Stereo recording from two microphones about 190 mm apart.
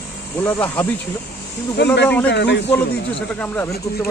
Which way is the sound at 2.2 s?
65° left (ahead or behind).